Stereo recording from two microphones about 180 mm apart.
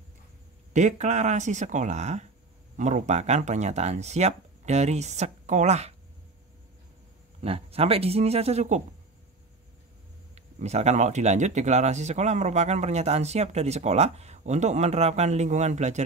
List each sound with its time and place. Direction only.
0.7 s speech: 40° right (ahead or behind)
7.4 s speech: 35° right (ahead or behind)
10.3 s speech: 35° right (ahead or behind)